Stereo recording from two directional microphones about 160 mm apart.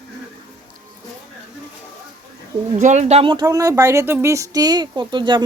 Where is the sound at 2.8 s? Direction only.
50° right (ahead or behind); by 5.4 s 30° right (ahead or behind).